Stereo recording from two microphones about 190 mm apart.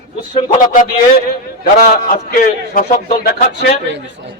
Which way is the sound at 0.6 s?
50° left (ahead or behind).